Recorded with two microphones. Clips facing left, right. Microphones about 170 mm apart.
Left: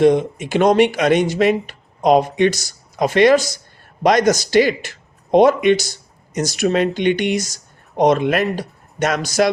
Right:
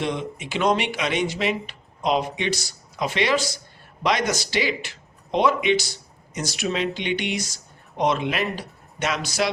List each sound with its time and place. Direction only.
0.0 s speech: 45° left (ahead or behind)